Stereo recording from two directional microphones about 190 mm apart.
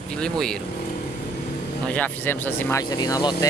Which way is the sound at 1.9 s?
10° left (ahead or behind).